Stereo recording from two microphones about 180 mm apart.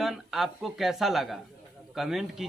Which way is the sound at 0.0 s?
Centre (ahead or behind).